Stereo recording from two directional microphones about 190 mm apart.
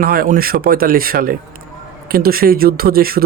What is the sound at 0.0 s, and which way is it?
Speech, 50° right (ahead or behind).